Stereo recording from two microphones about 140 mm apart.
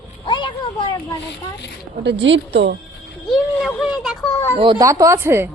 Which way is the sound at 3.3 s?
Centre (ahead or behind).